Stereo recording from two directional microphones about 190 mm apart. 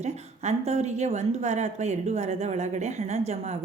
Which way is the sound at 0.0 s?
35° right (ahead or behind).